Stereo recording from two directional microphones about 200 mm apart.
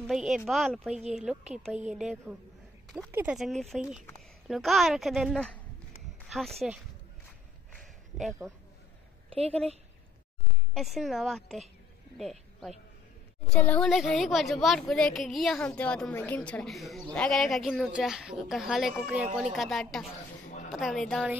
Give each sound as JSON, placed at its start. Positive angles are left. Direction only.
{"t": 0.0, "sound": "speech", "side_deg": 0}
{"t": 7.8, "sound": "a sound", "side_deg": 0}
{"t": 9.3, "sound": "a woman's voice", "side_deg": -30}
{"t": 10.7, "sound": "speech", "side_deg": 0}